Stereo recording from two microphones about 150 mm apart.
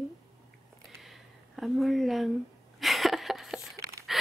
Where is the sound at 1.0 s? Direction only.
Centre (ahead or behind).